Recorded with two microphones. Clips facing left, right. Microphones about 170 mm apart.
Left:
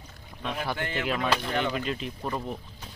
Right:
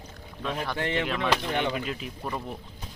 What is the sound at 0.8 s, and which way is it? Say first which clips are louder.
Speech: right 4 dB; 30° right (ahead or behind).